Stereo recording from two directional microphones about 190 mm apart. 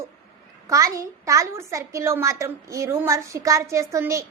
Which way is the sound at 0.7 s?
15° right (ahead or behind).